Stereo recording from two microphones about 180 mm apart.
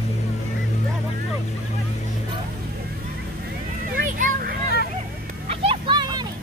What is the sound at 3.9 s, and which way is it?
Children playing, 50° right (ahead or behind).